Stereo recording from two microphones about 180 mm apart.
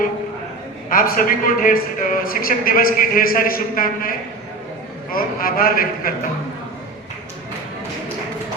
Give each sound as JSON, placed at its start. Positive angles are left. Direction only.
{"t": 0.9, "sound": "a man's voice", "side_deg": 50}
{"t": 5.1, "sound": "a man's voice", "side_deg": 55}